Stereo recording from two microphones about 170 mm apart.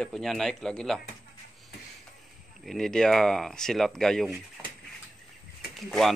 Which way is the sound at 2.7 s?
5° left (ahead or behind).